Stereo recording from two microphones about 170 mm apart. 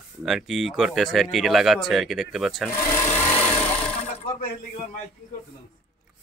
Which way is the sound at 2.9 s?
15° left (ahead or behind).